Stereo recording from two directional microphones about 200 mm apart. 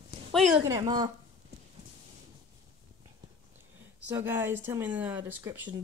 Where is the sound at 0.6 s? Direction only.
20° right (ahead or behind).